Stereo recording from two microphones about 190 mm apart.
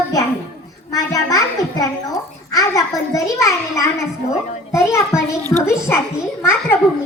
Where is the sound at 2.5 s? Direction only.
20° left (ahead or behind).